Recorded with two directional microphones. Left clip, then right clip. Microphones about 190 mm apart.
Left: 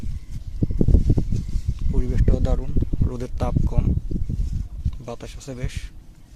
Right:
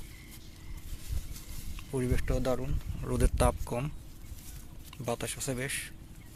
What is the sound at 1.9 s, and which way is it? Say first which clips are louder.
Speech: left 5 dB; 15° left (ahead or behind).